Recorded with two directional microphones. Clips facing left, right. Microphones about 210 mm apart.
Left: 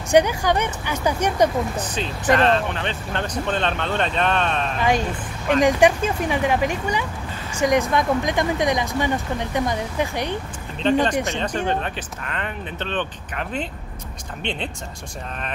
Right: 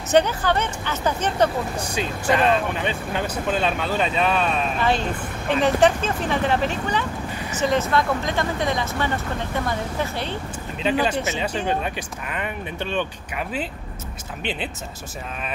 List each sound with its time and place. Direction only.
0.1 s speech: 10° left (ahead or behind)
1.8 s speech: 10° right (ahead or behind)
5.5 s speech: 15° left (ahead or behind)
10.8 s speech: 5° right (ahead or behind)